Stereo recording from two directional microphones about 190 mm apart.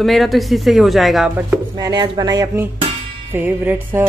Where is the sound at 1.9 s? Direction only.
25° right (ahead or behind).